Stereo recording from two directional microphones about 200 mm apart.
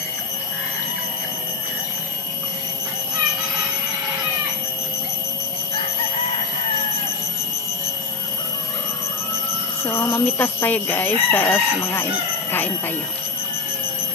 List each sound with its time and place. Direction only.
9.8 s speech: 10° left (ahead or behind)